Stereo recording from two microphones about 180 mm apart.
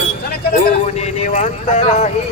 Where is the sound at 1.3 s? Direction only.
45° left (ahead or behind).